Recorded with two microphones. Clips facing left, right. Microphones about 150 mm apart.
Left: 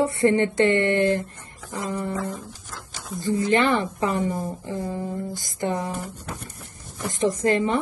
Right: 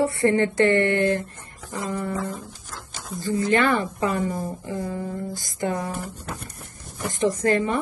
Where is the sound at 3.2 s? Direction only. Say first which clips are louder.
Even; 20° left (ahead or behind).